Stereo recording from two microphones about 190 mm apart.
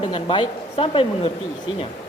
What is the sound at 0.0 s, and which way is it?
A woman's voice, 25° left (ahead or behind).